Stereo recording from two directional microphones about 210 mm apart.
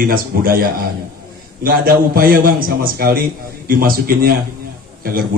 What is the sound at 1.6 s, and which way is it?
Speech, 45° right (ahead or behind).